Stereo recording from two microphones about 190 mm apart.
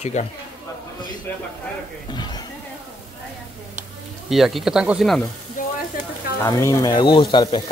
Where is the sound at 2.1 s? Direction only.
20° left (ahead or behind).